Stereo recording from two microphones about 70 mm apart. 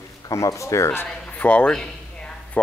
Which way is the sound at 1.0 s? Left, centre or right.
Centre.